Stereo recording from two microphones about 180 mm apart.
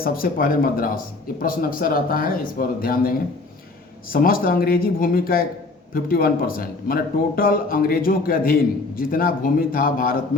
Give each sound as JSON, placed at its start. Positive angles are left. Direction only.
{"t": 0.0, "sound": "speech", "side_deg": 55}
{"t": 4.1, "sound": "speech", "side_deg": 55}